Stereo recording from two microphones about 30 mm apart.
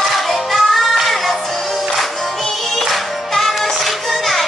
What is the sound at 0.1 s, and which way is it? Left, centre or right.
Music, centre.